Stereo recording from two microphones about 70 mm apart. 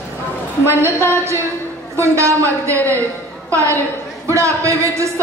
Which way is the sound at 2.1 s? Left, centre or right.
Right.